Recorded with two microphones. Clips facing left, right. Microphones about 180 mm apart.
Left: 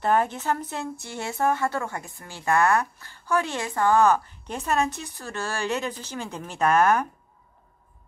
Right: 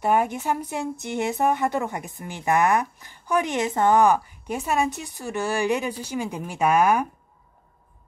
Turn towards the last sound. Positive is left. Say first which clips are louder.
# right 1 dB
turn(degrees=-10)  # may be behind; listen again after turning